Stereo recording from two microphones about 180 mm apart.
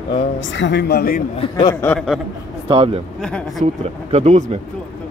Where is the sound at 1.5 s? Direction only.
20° left (ahead or behind).